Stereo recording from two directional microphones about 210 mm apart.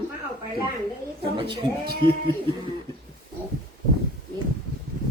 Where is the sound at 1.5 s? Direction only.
45° right (ahead or behind).